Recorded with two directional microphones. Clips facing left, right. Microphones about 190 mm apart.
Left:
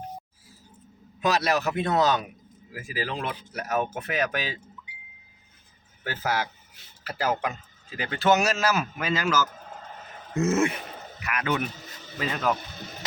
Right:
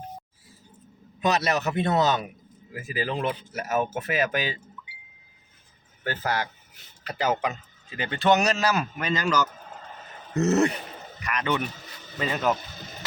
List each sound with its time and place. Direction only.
1.2 s a man's voice: centre (ahead or behind)
6.1 s a man's voice: 5° left (ahead or behind)
10.3 s throat clearing: 40° right (ahead or behind)
11.2 s a man's voice: 5° left (ahead or behind)